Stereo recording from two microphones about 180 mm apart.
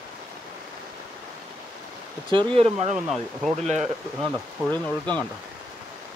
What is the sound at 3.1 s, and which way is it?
Speech, centre (ahead or behind).